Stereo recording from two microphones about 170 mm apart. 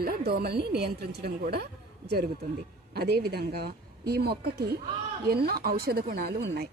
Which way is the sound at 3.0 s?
65° right (ahead or behind).